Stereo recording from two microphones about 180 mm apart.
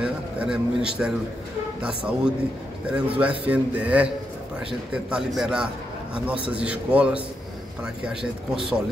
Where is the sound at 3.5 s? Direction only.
5° right (ahead or behind).